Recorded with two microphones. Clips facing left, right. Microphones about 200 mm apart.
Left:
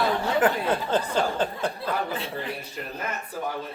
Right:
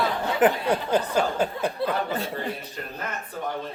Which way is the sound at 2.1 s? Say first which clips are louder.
Right 3 dB; 45° right (ahead or behind).